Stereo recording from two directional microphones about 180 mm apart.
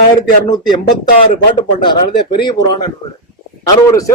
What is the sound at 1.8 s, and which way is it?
Speech, 25° left (ahead or behind).